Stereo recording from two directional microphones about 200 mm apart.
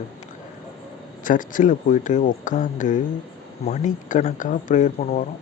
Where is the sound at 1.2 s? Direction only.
40° left (ahead or behind).